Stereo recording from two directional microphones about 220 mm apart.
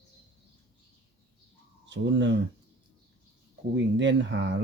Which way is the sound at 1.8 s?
55° right (ahead or behind).